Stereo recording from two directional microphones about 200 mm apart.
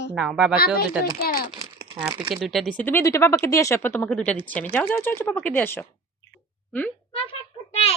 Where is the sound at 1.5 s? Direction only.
25° right (ahead or behind).